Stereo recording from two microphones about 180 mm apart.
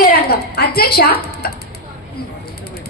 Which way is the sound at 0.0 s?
60° left (ahead or behind).